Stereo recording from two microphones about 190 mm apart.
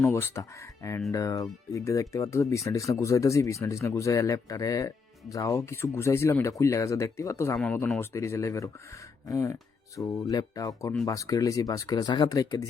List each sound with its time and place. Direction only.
0.0 s speech: 15° left (ahead or behind)